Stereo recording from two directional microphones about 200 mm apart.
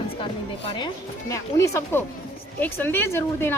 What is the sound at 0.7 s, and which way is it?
A woman's voice, 25° left (ahead or behind).